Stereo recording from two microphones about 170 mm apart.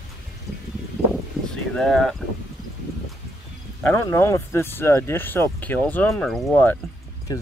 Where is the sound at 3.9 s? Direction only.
15° left (ahead or behind).